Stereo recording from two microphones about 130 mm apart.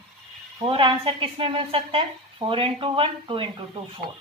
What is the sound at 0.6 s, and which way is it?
Speech, 40° right (ahead or behind).